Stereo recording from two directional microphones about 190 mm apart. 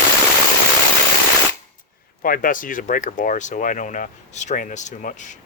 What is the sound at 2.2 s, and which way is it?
Speech, 45° left (ahead or behind).